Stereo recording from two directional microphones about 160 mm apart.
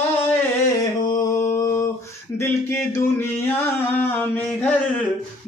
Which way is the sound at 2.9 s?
15° left (ahead or behind).